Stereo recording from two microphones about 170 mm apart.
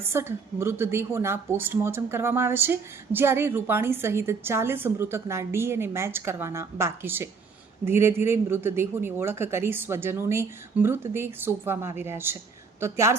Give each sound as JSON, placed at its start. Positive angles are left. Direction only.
{"t": 0.0, "sound": "a woman's voice", "side_deg": -15}